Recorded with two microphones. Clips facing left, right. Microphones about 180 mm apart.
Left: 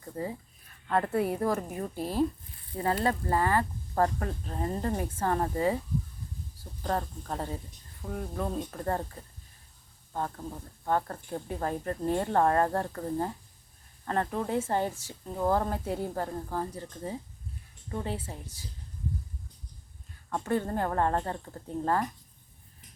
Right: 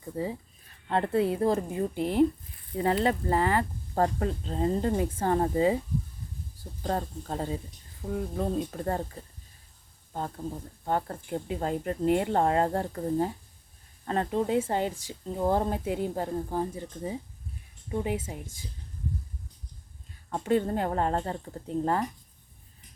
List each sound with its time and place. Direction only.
0.0 s speech: 20° right (ahead or behind)
6.8 s speech: 25° right (ahead or behind)
10.1 s speech: 25° right (ahead or behind)
20.3 s speech: 20° right (ahead or behind)